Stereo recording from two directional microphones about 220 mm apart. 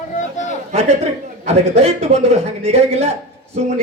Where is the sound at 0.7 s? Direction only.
30° right (ahead or behind).